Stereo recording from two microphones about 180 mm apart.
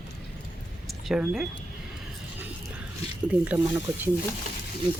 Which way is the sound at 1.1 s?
Centre (ahead or behind).